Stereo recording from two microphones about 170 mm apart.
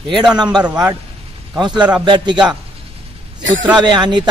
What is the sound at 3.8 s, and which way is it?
Speech, 25° right (ahead or behind).